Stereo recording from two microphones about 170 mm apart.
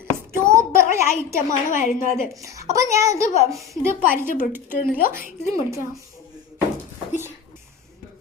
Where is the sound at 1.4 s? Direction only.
50° left (ahead or behind).